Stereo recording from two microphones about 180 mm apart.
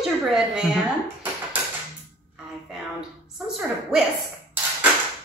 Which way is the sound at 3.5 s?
Centre (ahead or behind).